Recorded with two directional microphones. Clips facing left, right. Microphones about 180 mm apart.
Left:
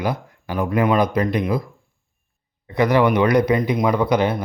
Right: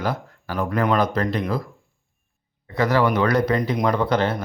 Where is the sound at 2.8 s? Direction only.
15° left (ahead or behind).